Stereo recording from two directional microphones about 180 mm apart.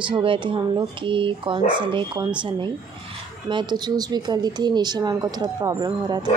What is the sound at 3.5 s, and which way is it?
Speech, 25° right (ahead or behind).